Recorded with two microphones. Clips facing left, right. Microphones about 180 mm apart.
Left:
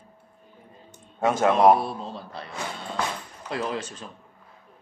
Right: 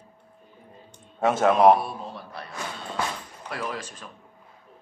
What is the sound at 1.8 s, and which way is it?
A man's voice, 25° left (ahead or behind).